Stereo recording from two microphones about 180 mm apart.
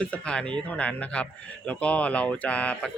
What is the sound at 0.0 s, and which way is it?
A man's voice, 5° left (ahead or behind).